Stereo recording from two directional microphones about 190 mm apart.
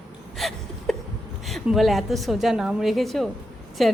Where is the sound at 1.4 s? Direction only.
Centre (ahead or behind).